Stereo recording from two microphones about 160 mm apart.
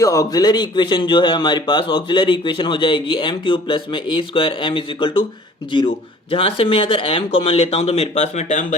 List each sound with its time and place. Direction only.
0.0 s speech: 20° left (ahead or behind)
6.3 s speech: 35° left (ahead or behind)